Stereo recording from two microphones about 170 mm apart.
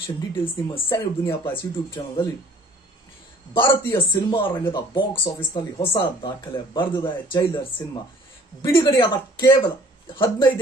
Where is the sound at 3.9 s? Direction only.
25° left (ahead or behind).